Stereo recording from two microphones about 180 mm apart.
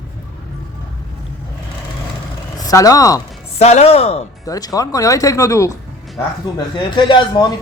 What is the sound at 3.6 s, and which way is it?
Speech, 35° left (ahead or behind).